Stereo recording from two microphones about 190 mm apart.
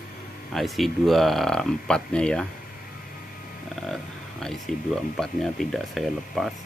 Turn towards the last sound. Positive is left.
turn(degrees=0)  # may be behind; listen again after turning